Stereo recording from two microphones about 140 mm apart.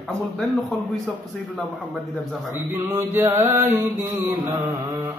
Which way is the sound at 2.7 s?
15° right (ahead or behind).